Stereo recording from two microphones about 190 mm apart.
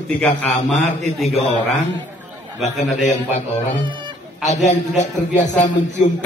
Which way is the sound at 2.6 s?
40° left (ahead or behind).